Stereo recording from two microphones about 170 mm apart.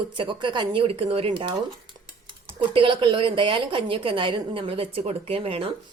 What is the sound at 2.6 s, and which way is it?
A woman's voice, 30° right (ahead or behind).